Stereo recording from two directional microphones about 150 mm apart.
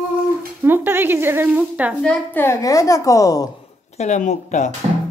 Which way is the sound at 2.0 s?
5° left (ahead or behind).